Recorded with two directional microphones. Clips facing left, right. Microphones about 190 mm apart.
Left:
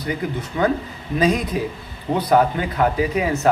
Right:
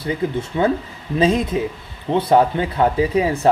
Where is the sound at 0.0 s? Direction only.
25° right (ahead or behind).